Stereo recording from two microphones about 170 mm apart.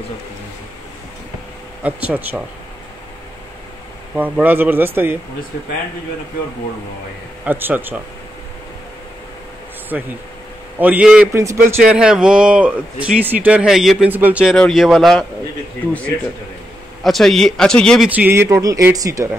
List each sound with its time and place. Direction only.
1.8 s speech: 10° right (ahead or behind)
4.1 s speech: 10° right (ahead or behind)
7.4 s speech: 10° right (ahead or behind)
9.9 s speech: 5° right (ahead or behind)
11.9 s speech: 5° right (ahead or behind)
14.5 s speech: centre (ahead or behind)
17.0 s speech: centre (ahead or behind)
18.1 s speech: 10° right (ahead or behind)